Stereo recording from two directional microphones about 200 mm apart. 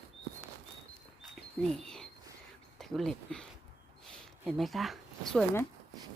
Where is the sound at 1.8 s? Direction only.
5° left (ahead or behind).